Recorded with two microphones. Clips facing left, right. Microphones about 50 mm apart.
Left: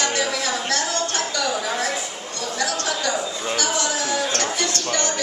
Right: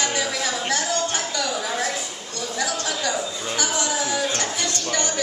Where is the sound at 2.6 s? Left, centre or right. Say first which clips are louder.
Left 1 dB; centre.